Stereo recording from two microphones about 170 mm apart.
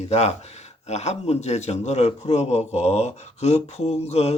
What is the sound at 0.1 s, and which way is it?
A man's voice, 40° left (ahead or behind).